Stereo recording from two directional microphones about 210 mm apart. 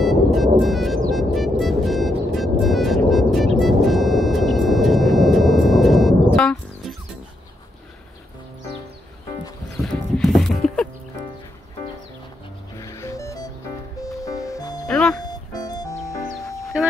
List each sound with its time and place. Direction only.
0.0 s music: centre (ahead or behind)
9.8 s music: centre (ahead or behind)
12.7 s music: 15° left (ahead or behind)
14.9 s music: 5° left (ahead or behind)
15.2 s music: 20° left (ahead or behind)